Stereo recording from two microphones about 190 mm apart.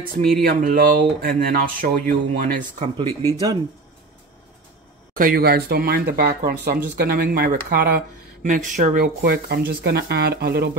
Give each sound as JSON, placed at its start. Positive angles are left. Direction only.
{"t": 0.4, "sound": "speech", "side_deg": -50}
{"t": 3.1, "sound": "speech", "side_deg": 15}
{"t": 5.1, "sound": "speech", "side_deg": -50}